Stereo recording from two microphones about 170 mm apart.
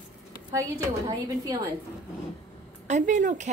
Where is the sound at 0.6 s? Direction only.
20° right (ahead or behind).